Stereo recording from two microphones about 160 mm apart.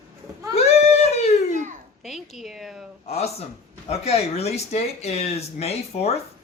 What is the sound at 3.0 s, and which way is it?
Speech, 40° left (ahead or behind).